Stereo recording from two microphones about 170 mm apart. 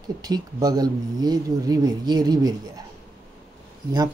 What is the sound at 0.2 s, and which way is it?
Speech, 25° right (ahead or behind).